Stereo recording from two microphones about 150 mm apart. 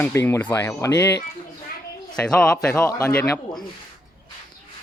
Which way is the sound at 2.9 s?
20° left (ahead or behind).